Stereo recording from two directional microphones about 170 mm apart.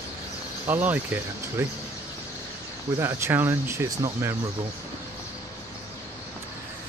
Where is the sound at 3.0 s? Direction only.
15° right (ahead or behind).